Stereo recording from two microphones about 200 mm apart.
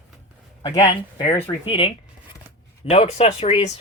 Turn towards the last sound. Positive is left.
turn(degrees=30)  # may be behind; listen again after turning